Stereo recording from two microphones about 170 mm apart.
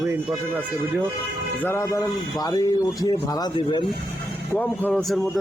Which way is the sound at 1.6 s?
15° left (ahead or behind).